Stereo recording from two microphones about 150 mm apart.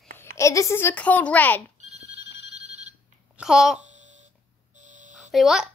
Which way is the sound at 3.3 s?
5° right (ahead or behind).